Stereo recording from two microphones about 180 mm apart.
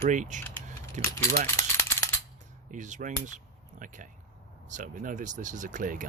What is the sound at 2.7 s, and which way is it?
Speech, 40° right (ahead or behind).